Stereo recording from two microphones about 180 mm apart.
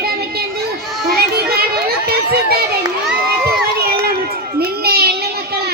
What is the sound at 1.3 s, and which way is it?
Children playing, 60° right (ahead or behind).